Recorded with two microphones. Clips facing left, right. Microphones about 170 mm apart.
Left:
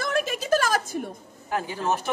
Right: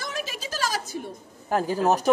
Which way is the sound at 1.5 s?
40° right (ahead or behind).